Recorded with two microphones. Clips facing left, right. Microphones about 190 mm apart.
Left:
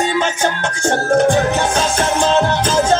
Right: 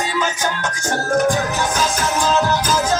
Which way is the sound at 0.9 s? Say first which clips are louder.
Left 4 dB; 25° left (ahead or behind).